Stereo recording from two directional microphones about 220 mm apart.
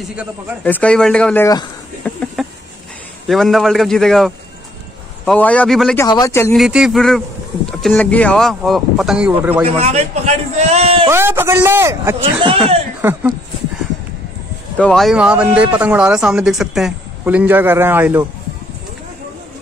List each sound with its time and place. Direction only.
0.0 s a man's voice: 5° right (ahead or behind)
0.7 s speech: 5° left (ahead or behind)
2.0 s a sound: 5° left (ahead or behind)
3.3 s a man's voice: centre (ahead or behind)
6.0 s speech: 15° left (ahead or behind)
6.5 s a man's voice: centre (ahead or behind)
9.7 s a man's voice: 30° right (ahead or behind)
11.1 s a man's voice: 10° right (ahead or behind)
12.2 s a man's voice: 25° right (ahead or behind)
13.0 s speech: 10° right (ahead or behind)
14.8 s a man's voice: centre (ahead or behind)